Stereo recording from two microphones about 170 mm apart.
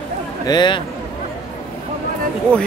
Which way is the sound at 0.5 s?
25° left (ahead or behind).